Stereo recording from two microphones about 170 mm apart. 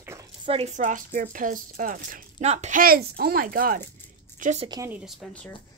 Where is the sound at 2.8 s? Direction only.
65° right (ahead or behind).